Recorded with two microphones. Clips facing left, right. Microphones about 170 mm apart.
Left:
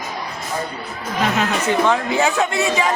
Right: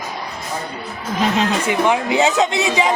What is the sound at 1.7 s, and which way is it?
Speech, 15° right (ahead or behind).